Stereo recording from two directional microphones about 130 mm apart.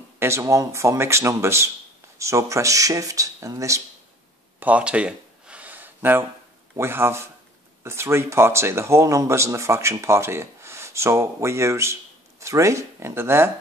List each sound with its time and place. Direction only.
0.2 s speech: 20° right (ahead or behind)
4.6 s a sound: 10° right (ahead or behind)
6.7 s speech: 20° right (ahead or behind)